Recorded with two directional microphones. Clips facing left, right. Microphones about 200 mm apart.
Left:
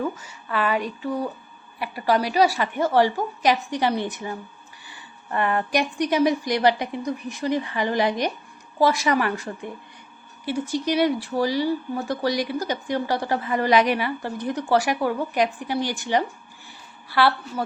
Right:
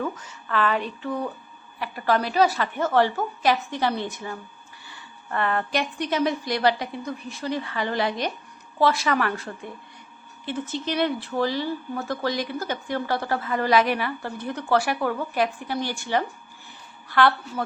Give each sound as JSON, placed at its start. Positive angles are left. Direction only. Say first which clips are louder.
{"t": 0.0, "sound": "a woman's voice", "louder": "left 2 dB", "side_deg": 10}